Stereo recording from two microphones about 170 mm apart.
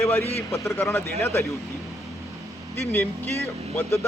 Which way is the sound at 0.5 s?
20° left (ahead or behind).